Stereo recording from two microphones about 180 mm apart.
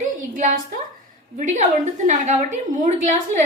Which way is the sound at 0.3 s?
50° right (ahead or behind).